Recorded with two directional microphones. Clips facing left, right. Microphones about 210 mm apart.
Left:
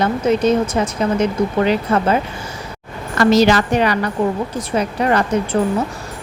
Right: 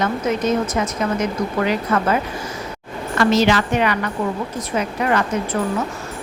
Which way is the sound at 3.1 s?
40° left (ahead or behind).